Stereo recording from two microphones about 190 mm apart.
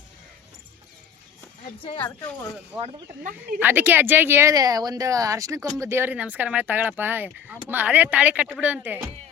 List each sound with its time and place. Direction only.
1.8 s speech: 25° left (ahead or behind)
2.7 s speech: 10° right (ahead or behind)